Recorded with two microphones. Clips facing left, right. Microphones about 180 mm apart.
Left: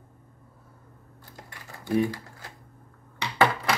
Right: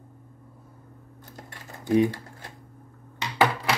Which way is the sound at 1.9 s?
20° right (ahead or behind).